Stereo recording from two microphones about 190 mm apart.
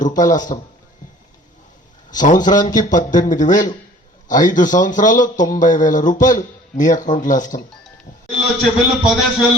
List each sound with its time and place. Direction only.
0.0 s speech: 45° left (ahead or behind)
2.2 s speech: 45° left (ahead or behind)
8.4 s a man's voice: 5° right (ahead or behind)